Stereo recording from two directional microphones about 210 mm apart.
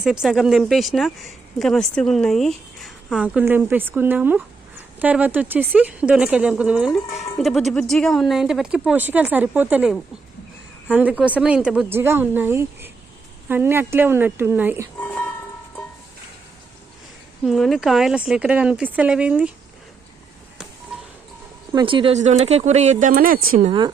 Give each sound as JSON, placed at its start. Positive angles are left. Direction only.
{"t": 0.0, "sound": "speech", "side_deg": -5}
{"t": 14.9, "sound": "music", "side_deg": 5}
{"t": 17.4, "sound": "speech", "side_deg": 0}
{"t": 21.7, "sound": "speech", "side_deg": -20}
{"t": 23.6, "sound": "speech", "side_deg": -20}